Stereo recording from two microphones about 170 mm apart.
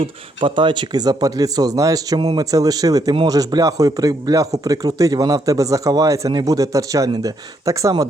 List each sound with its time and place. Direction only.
0.0 s speech: 30° right (ahead or behind)